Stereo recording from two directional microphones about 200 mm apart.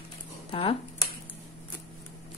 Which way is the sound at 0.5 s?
30° left (ahead or behind).